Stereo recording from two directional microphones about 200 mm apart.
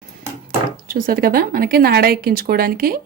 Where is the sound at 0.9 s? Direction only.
45° right (ahead or behind).